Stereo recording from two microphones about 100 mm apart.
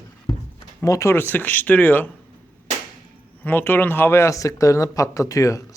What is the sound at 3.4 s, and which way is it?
Speech, 20° left (ahead or behind).